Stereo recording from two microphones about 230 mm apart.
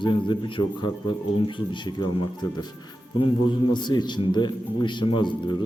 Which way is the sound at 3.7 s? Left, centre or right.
Centre.